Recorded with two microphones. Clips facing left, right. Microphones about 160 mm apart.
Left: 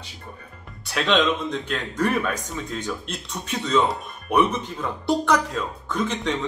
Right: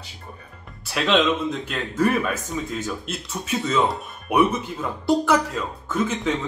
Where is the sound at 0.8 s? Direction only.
5° right (ahead or behind).